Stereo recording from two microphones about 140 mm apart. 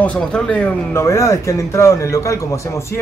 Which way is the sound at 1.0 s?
20° left (ahead or behind).